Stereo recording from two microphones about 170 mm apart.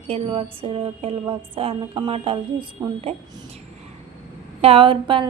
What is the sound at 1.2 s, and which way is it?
Speech, 15° right (ahead or behind).